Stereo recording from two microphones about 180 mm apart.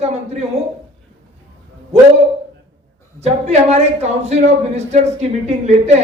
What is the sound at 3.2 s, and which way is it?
Speech, 35° right (ahead or behind).